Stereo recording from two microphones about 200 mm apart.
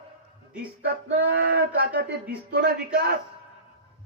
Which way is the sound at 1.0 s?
55° right (ahead or behind).